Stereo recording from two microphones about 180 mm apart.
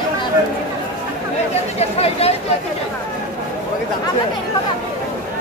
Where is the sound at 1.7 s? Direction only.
35° left (ahead or behind).